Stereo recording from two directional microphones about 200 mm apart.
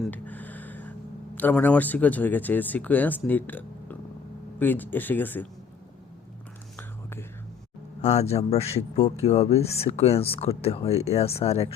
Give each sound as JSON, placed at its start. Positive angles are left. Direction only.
{"t": 0.0, "sound": "a sound", "side_deg": 10}
{"t": 1.4, "sound": "speech", "side_deg": 10}
{"t": 6.7, "sound": "whispering", "side_deg": 10}
{"t": 8.0, "sound": "speech", "side_deg": 35}